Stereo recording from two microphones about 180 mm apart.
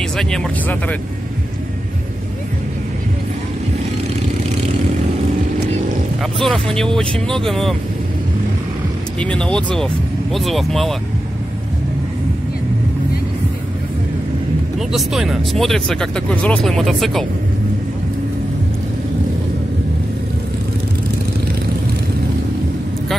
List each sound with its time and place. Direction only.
0.2 s speech: 5° left (ahead or behind)
6.4 s speech: 5° left (ahead or behind)
9.2 s speech: 5° left (ahead or behind)
14.8 s speech: centre (ahead or behind)